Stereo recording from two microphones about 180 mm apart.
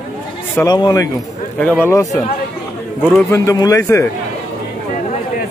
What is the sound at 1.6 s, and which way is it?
Speech, 10° left (ahead or behind).